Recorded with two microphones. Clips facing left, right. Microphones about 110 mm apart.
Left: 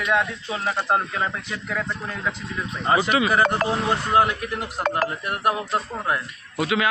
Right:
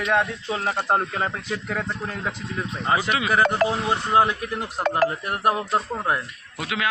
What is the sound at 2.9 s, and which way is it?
Speech, centre (ahead or behind).